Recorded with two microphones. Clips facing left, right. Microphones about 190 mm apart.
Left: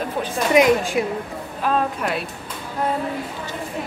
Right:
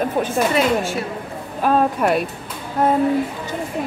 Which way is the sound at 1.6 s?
50° right (ahead or behind).